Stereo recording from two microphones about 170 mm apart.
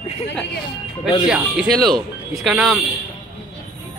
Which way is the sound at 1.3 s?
Centre (ahead or behind).